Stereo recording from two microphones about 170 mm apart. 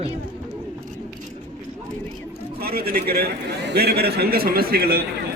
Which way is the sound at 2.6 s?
65° right (ahead or behind).